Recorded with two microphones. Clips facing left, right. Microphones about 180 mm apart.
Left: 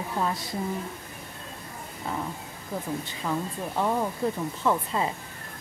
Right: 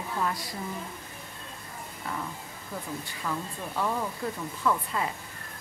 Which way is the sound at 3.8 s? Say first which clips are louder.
Left 4 dB; 25° left (ahead or behind).